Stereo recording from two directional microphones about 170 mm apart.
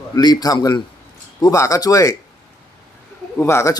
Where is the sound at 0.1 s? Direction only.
25° left (ahead or behind).